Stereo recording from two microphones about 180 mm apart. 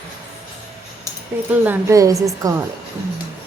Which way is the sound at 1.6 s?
15° right (ahead or behind).